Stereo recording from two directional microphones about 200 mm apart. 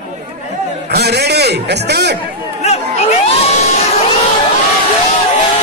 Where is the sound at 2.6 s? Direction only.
30° left (ahead or behind).